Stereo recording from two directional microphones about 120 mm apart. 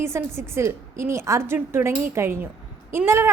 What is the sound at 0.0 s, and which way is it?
A woman's voice, 20° right (ahead or behind).